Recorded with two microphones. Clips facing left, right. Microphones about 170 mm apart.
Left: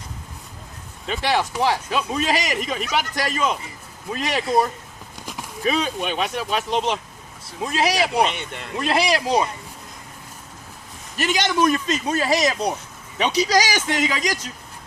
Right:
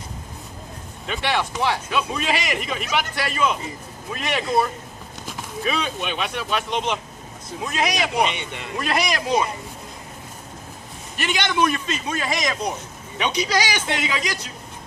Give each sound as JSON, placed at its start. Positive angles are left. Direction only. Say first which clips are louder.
{"t": 1.0, "sound": "a man's voice", "louder": "left 2 dB", "side_deg": 35}
{"t": 8.2, "sound": "speech", "louder": "left 1 dB", "side_deg": 0}
{"t": 8.8, "sound": "a man's voice", "louder": "left 3 dB", "side_deg": 30}
{"t": 11.2, "sound": "a man's voice", "louder": "left 2 dB", "side_deg": 40}